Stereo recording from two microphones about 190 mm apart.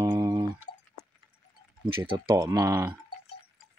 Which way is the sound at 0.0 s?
20° right (ahead or behind).